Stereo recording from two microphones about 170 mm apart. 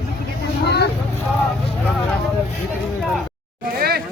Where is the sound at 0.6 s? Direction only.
75° left (ahead or behind).